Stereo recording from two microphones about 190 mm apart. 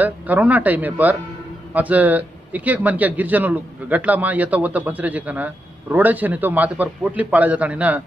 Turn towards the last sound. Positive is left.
turn(degrees=-10)  # may be behind; listen again after turning